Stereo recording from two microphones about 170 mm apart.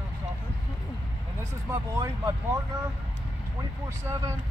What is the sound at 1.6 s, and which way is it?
Speech, 20° right (ahead or behind).